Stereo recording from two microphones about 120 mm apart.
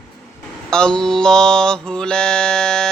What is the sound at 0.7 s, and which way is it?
Mantra, 5° left (ahead or behind).